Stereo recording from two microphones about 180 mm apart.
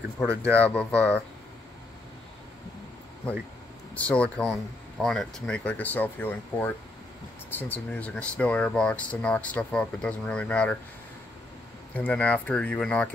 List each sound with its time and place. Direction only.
0.2 s speech: 10° left (ahead or behind)
3.9 s speech: 5° left (ahead or behind)
11.9 s speech: 10° left (ahead or behind)